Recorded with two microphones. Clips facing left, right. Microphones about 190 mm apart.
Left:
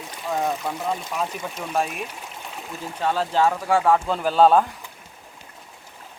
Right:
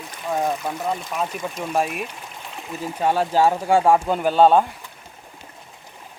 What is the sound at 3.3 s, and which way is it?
Speech, 30° right (ahead or behind).